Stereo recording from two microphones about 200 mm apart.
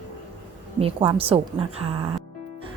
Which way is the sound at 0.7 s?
25° right (ahead or behind).